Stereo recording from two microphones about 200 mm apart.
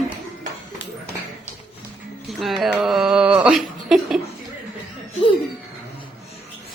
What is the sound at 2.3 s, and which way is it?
A woman's voice, centre (ahead or behind).